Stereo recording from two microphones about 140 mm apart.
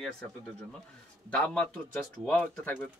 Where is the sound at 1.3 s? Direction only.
5° left (ahead or behind).